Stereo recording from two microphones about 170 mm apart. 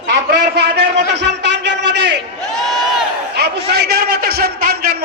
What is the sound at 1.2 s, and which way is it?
Speech, 90° right.